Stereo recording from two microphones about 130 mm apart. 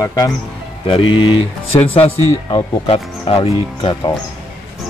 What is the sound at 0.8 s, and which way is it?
Speech, 45° left (ahead or behind).